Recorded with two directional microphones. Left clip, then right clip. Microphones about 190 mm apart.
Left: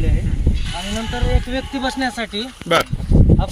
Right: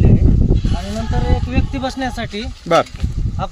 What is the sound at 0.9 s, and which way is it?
Speech, 15° right (ahead or behind).